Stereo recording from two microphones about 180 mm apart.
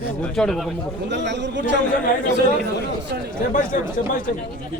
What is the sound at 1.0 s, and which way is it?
Speech, 75° right (ahead or behind).